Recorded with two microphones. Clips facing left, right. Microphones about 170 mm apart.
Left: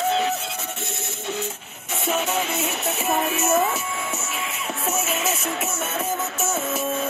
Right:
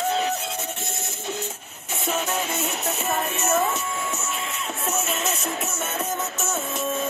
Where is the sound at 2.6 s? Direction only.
Centre (ahead or behind).